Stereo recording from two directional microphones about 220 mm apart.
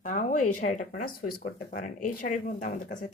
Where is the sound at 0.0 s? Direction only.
35° left (ahead or behind).